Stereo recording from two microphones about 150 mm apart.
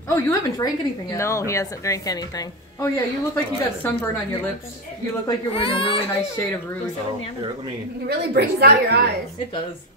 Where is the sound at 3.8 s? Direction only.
15° left (ahead or behind).